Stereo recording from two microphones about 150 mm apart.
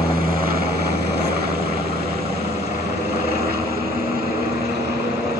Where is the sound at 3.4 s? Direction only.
90° right.